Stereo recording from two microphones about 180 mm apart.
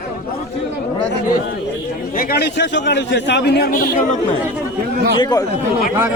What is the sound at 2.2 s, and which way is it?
A man's voice, 60° left (ahead or behind).